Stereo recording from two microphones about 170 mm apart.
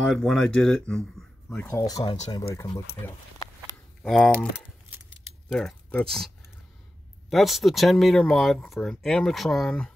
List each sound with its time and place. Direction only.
0.1 s speech: centre (ahead or behind)
1.9 s speech: 25° left (ahead or behind)
4.0 s speech: centre (ahead or behind)
5.5 s speech: 5° left (ahead or behind)